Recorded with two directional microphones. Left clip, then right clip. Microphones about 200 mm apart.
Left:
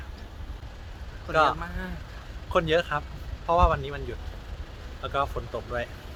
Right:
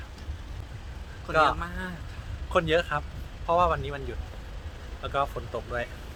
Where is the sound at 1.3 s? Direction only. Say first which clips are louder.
Even; 5° left (ahead or behind).